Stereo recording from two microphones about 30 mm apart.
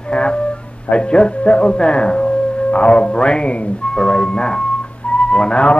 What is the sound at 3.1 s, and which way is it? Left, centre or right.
A man's voice, left.